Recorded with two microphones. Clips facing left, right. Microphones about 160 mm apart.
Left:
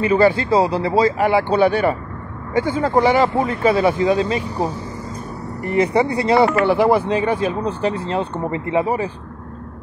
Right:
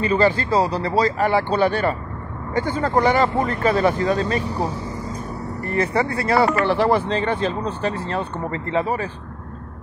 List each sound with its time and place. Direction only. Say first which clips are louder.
0.0 s speech: left 3 dB; 10° left (ahead or behind)